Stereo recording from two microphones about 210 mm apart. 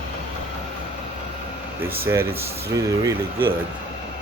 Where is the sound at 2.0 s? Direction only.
10° right (ahead or behind).